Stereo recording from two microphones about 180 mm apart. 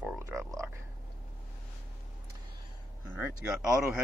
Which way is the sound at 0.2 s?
15° right (ahead or behind).